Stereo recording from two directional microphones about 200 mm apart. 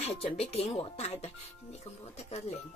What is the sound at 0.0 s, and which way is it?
Speech, 30° left (ahead or behind).